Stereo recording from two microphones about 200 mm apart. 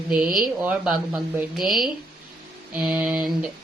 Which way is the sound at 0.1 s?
5° right (ahead or behind).